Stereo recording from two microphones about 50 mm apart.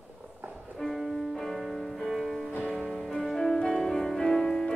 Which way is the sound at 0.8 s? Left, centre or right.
Centre.